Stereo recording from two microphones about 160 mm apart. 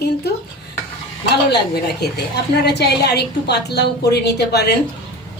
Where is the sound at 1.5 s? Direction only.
90° left.